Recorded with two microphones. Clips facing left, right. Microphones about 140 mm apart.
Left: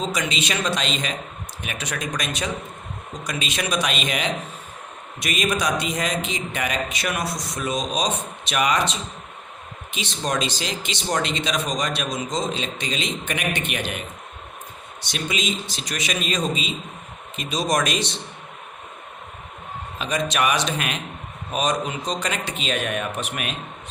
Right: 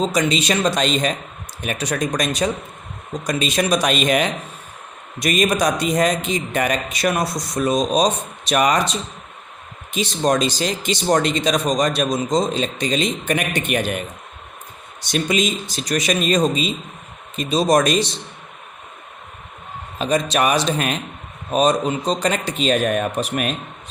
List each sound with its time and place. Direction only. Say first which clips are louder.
0.0 s speech: right 7 dB; 40° right (ahead or behind)
15.0 s a man's voice: right 7 dB; 45° right (ahead or behind)
17.3 s speech: right 7 dB; 30° right (ahead or behind)
20.0 s speech: right 5 dB; 35° right (ahead or behind)